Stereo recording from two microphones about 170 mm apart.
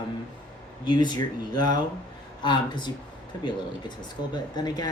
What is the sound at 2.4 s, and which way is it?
Speech, 25° left (ahead or behind).